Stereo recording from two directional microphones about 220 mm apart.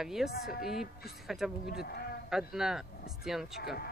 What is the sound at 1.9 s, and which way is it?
Speech, 45° left (ahead or behind).